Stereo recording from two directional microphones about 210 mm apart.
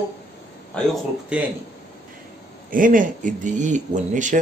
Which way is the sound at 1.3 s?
5° right (ahead or behind).